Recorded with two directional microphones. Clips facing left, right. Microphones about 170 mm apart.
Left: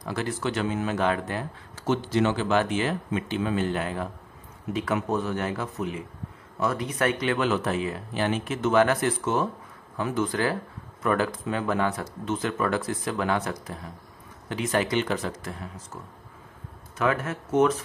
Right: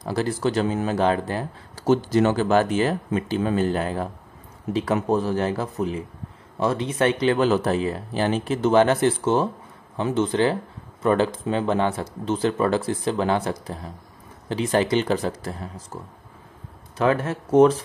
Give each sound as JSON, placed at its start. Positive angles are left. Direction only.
{"t": 0.0, "sound": "speech", "side_deg": -35}